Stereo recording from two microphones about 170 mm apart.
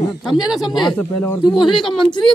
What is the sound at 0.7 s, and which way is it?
Speech, centre (ahead or behind).